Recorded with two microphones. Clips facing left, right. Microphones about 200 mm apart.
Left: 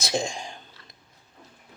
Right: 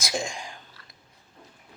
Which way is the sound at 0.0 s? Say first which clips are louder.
Left 3 dB; 30° left (ahead or behind).